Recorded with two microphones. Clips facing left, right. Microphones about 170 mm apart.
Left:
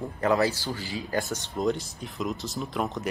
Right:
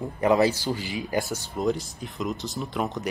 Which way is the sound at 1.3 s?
Centre (ahead or behind).